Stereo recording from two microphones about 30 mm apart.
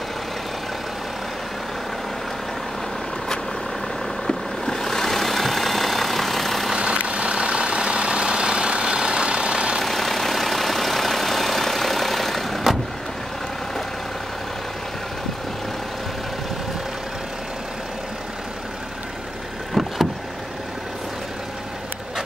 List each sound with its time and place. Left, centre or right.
4.3 s vehicle: centre
7.0 s vehicle: right
9.8 s vehicle: centre
19.7 s vehicle: centre